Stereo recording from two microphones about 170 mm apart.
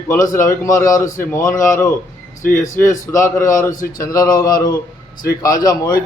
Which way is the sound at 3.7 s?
55° left (ahead or behind).